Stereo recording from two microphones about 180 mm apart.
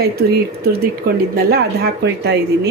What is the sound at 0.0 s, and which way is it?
Speech, 60° right (ahead or behind).